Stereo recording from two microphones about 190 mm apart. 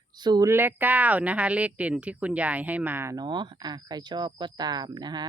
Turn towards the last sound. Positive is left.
turn(degrees=-20)  # may be behind; listen again after turning